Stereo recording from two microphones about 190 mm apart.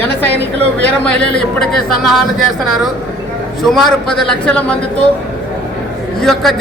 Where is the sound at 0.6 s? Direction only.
70° right (ahead or behind).